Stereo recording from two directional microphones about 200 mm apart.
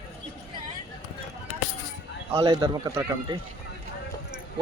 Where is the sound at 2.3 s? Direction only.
15° right (ahead or behind).